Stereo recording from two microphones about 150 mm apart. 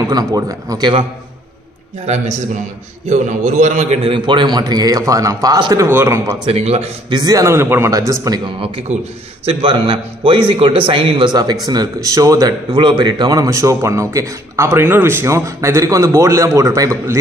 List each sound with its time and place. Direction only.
0.0 s speech: 25° right (ahead or behind)
2.0 s a man's voice: 50° right (ahead or behind); by 6.3 s 15° right (ahead or behind)
6.4 s a man's voice: 40° right (ahead or behind)
7.1 s speech: 25° right (ahead or behind)
8.5 s a man's voice: 35° right (ahead or behind); by 17.2 s 20° right (ahead or behind)